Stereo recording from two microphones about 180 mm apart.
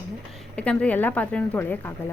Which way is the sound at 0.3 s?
5° left (ahead or behind).